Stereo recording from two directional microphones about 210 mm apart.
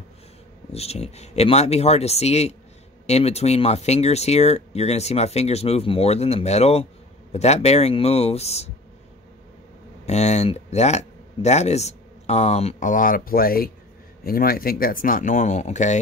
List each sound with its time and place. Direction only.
0.7 s speech: 30° left (ahead or behind)
10.0 s speech: 30° left (ahead or behind)